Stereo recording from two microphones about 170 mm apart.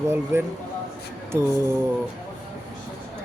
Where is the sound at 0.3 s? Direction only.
15° right (ahead or behind).